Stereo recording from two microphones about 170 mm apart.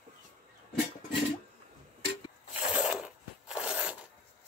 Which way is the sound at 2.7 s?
5° right (ahead or behind).